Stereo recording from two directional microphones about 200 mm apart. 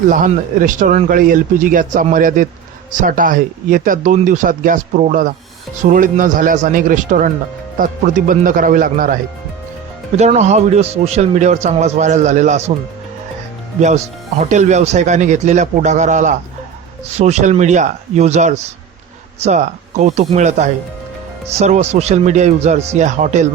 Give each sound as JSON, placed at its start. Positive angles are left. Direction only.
{"t": 0.1, "sound": "a man's voice", "side_deg": -40}
{"t": 10.2, "sound": "a man's voice", "side_deg": -35}
{"t": 13.7, "sound": "a man's voice", "side_deg": -35}